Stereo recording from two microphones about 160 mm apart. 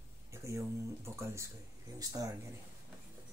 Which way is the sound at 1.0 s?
15° right (ahead or behind).